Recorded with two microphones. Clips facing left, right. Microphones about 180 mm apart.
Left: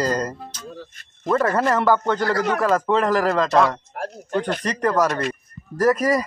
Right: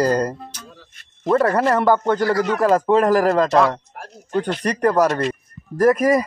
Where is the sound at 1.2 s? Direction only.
35° right (ahead or behind).